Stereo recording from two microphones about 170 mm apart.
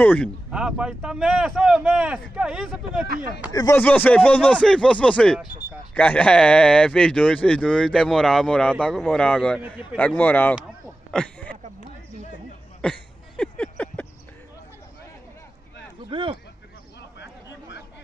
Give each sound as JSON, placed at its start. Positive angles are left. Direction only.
{"t": 0.0, "sound": "speech", "side_deg": 10}
{"t": 0.5, "sound": "speech", "side_deg": -5}
{"t": 3.5, "sound": "speech", "side_deg": 20}
{"t": 3.8, "sound": "speech", "side_deg": 10}
{"t": 11.1, "sound": "a sound", "side_deg": 5}
{"t": 12.8, "sound": "a sound", "side_deg": 5}
{"t": 16.1, "sound": "speech", "side_deg": -30}